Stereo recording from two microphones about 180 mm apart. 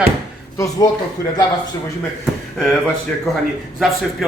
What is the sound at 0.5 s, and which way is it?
Speech, 15° left (ahead or behind).